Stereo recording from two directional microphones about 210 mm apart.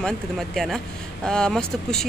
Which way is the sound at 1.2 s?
5° left (ahead or behind).